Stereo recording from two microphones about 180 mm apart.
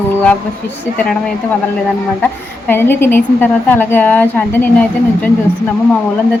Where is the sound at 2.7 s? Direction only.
10° left (ahead or behind).